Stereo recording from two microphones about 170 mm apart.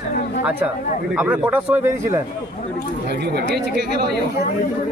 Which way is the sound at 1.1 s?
10° right (ahead or behind).